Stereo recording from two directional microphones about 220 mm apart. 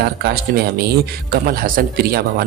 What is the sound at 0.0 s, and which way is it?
Speech, 45° right (ahead or behind).